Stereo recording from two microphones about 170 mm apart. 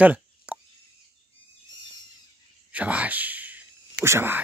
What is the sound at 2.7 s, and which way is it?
Whispering, 10° right (ahead or behind).